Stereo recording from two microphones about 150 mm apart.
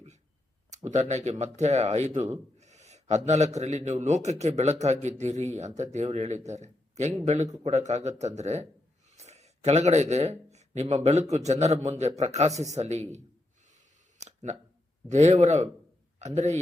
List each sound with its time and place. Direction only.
0.9 s speech: 50° right (ahead or behind)
14.2 s a sound: 50° right (ahead or behind)
15.1 s a man's voice: 50° right (ahead or behind)